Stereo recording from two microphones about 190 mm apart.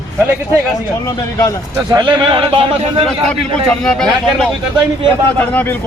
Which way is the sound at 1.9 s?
25° right (ahead or behind).